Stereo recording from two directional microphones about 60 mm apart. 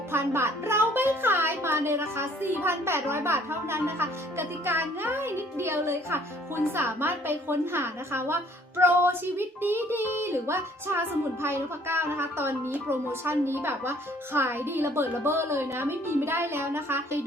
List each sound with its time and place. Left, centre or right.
0.1 s a woman's voice: right